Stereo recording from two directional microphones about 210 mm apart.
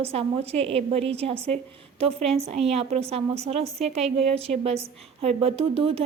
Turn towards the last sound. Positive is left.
turn(degrees=-30)  # may be behind; listen again after turning